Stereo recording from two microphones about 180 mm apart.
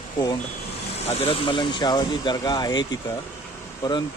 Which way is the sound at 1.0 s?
30° left (ahead or behind).